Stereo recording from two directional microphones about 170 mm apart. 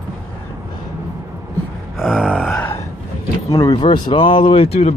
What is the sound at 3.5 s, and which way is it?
Speech, 20° left (ahead or behind).